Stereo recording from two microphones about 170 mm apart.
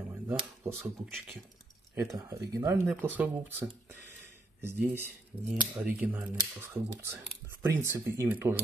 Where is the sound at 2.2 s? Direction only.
20° right (ahead or behind).